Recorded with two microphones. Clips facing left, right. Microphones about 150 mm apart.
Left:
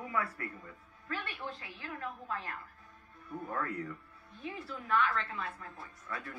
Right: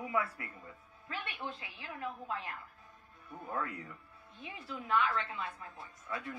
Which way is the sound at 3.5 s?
20° right (ahead or behind).